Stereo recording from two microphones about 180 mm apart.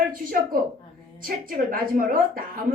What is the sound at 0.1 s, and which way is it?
A woman's voice, 50° right (ahead or behind).